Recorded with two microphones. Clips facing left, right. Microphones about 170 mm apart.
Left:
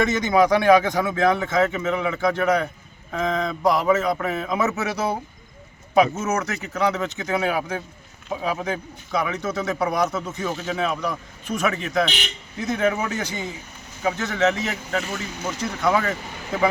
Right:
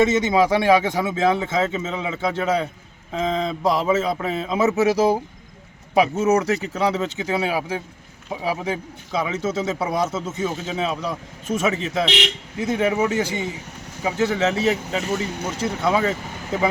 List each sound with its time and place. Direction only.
0.0 s a man's voice: 25° right (ahead or behind)
6.3 s a man's voice: 35° right (ahead or behind)
12.0 s speech: 90° right
12.5 s a man's voice: 30° right (ahead or behind)